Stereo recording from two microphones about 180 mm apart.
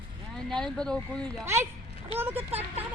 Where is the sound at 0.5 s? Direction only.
5° left (ahead or behind).